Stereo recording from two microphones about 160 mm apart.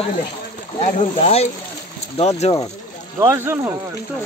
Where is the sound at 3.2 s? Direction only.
15° right (ahead or behind).